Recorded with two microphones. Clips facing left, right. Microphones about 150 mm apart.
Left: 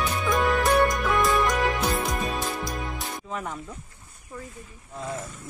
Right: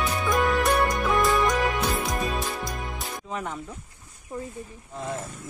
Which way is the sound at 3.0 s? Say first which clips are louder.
Even; centre (ahead or behind).